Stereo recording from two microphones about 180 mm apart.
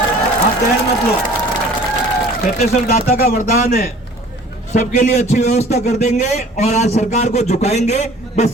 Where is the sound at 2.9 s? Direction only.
45° left (ahead or behind).